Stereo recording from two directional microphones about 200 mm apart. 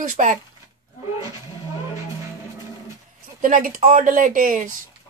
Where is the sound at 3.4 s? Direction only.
40° right (ahead or behind).